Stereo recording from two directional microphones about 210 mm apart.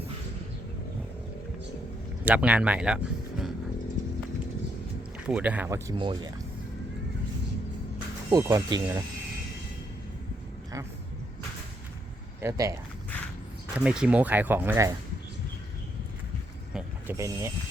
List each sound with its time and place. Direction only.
2.2 s speech: 5° right (ahead or behind)
5.2 s speech: 5° right (ahead or behind); by 6.3 s 20° right (ahead or behind)
8.3 s speech: 20° right (ahead or behind)
12.4 s speech: 15° right (ahead or behind)
13.7 s speech: 5° right (ahead or behind)
16.7 s speech: 10° right (ahead or behind)